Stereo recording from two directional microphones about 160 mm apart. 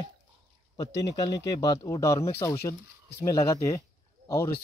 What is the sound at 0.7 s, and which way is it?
Speech, 25° left (ahead or behind).